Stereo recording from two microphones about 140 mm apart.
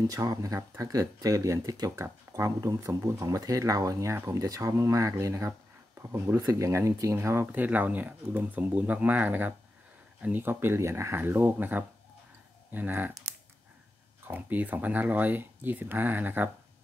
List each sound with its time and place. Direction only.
0.1 s speech: 25° right (ahead or behind)
14.2 s speech: 10° right (ahead or behind)